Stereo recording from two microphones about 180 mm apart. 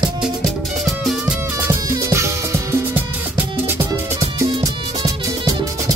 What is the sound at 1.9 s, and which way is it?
Music, 15° right (ahead or behind).